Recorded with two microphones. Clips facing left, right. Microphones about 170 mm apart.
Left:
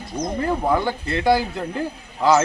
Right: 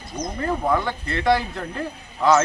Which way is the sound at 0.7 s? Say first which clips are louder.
Left 2 dB; 30° left (ahead or behind).